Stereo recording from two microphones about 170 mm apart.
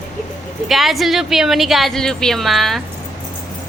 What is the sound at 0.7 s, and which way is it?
A woman's voice, centre (ahead or behind).